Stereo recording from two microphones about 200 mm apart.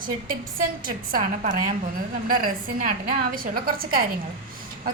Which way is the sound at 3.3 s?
45° right (ahead or behind).